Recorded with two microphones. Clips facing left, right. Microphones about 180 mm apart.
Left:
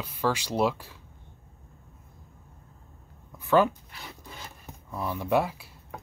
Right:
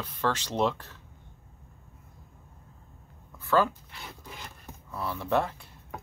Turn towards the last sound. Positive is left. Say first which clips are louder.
# left 2 dB
turn(degrees=10)  # may be behind; listen again after turning